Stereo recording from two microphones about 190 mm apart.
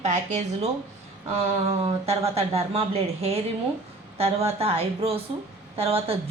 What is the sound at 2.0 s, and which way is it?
Speech, 30° right (ahead or behind).